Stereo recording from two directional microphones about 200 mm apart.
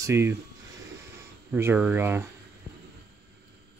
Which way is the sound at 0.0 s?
15° right (ahead or behind).